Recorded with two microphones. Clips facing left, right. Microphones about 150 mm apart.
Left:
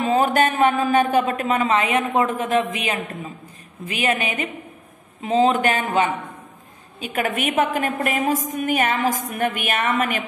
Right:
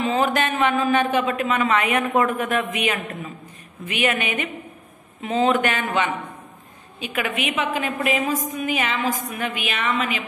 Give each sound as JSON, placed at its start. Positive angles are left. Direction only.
{"t": 0.0, "sound": "a woman's voice", "side_deg": 35}
{"t": 3.8, "sound": "a woman's voice", "side_deg": 30}